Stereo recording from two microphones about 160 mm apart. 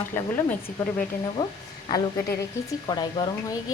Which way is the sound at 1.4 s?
25° left (ahead or behind).